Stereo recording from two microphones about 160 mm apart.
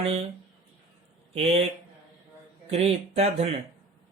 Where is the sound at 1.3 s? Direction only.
40° right (ahead or behind).